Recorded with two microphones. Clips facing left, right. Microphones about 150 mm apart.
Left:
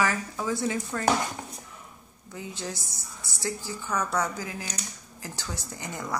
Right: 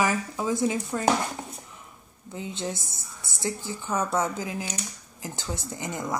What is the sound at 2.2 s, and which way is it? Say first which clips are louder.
A woman's voice: right 4 dB; 25° right (ahead or behind).